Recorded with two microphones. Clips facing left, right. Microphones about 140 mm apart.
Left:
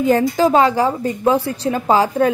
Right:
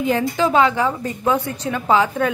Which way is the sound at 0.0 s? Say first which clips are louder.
Left 4 dB; 40° left (ahead or behind).